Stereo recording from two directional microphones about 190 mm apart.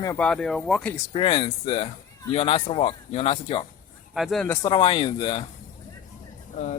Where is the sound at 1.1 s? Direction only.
25° left (ahead or behind).